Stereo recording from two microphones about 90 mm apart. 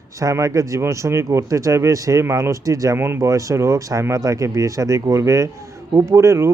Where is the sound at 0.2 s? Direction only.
40° right (ahead or behind).